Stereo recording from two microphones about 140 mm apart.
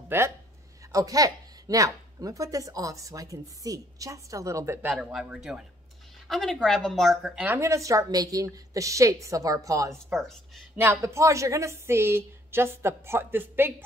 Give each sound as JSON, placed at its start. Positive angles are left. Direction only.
{"t": 0.1, "sound": "a woman's voice", "side_deg": -15}
{"t": 4.8, "sound": "a woman's voice", "side_deg": -5}
{"t": 7.4, "sound": "a woman's voice", "side_deg": -20}
{"t": 10.1, "sound": "a woman's voice", "side_deg": 0}
{"t": 10.8, "sound": "a woman's voice", "side_deg": -20}